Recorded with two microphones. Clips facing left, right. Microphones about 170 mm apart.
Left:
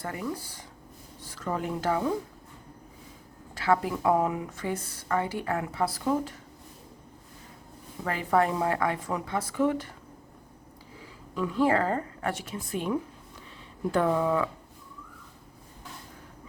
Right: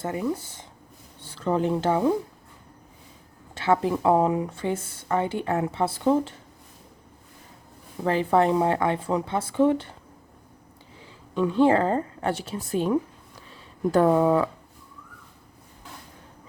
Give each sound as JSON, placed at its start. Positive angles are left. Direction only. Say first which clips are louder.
{"t": 0.0, "sound": "speech", "louder": "right 6 dB", "side_deg": -25}
{"t": 3.5, "sound": "speech", "louder": "right 3 dB", "side_deg": -25}
{"t": 8.0, "sound": "speech", "louder": "right 5 dB", "side_deg": -30}
{"t": 11.3, "sound": "speech", "louder": "right 5 dB", "side_deg": -25}